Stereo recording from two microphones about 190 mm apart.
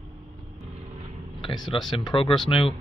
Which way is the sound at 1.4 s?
25° left (ahead or behind).